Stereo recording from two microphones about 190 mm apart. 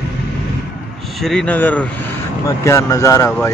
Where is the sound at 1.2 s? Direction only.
5° left (ahead or behind).